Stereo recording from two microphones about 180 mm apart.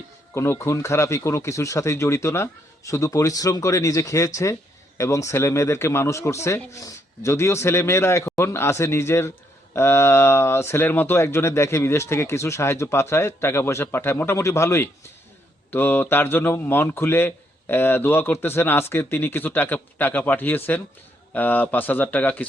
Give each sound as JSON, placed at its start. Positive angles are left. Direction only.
{"t": 0.3, "sound": "speech", "side_deg": 15}